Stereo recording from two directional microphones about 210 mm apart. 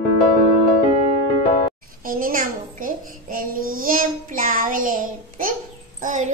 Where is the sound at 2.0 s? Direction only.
40° right (ahead or behind).